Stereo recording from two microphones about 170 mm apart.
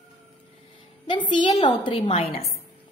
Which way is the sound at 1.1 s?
30° left (ahead or behind).